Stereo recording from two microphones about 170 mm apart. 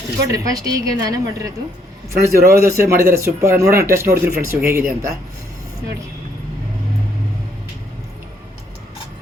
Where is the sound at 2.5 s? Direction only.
15° right (ahead or behind).